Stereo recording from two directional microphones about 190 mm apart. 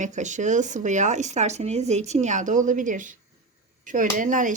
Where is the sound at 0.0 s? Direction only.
40° right (ahead or behind).